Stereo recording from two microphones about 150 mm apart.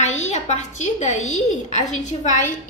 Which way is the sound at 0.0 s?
50° left (ahead or behind).